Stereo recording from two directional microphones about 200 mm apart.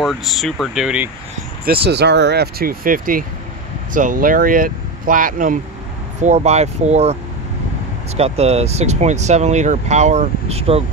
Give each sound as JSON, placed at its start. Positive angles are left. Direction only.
{"t": 0.0, "sound": "speech", "side_deg": 0}
{"t": 1.7, "sound": "speech", "side_deg": -55}
{"t": 8.2, "sound": "speech", "side_deg": -30}